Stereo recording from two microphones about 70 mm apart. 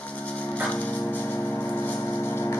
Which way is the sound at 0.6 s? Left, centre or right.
Centre.